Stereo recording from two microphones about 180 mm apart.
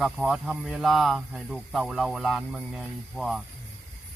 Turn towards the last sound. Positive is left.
turn(degrees=0)  # may be behind; listen again after turning